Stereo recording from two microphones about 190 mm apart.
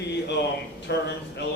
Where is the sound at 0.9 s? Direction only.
65° left (ahead or behind).